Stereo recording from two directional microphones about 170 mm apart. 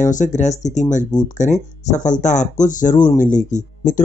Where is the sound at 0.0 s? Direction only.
45° left (ahead or behind).